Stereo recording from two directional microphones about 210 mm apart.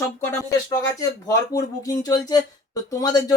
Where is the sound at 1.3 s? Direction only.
15° left (ahead or behind).